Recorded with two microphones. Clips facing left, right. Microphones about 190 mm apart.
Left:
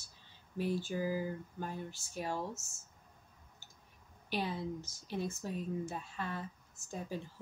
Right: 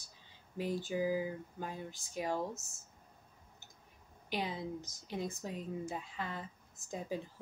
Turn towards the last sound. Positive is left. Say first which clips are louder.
# right 2 dB
turn(degrees=-15)  # may be behind; listen again after turning